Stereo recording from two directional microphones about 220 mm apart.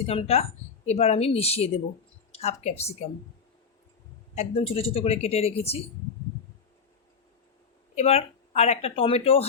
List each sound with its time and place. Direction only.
0.0 s speech: 30° left (ahead or behind)
4.4 s speech: 25° left (ahead or behind)
7.9 s speech: 30° left (ahead or behind)